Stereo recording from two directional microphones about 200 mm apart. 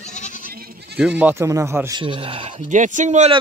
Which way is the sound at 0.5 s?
50° right (ahead or behind).